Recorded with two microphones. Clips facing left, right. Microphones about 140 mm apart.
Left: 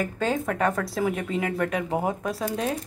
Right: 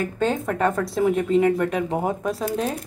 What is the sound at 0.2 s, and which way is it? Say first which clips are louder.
Speech: right 3 dB; 5° left (ahead or behind).